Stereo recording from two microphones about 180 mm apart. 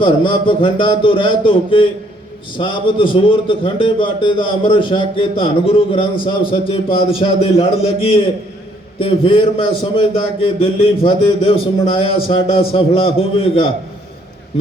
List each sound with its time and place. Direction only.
0.0 s a man's voice: 30° left (ahead or behind)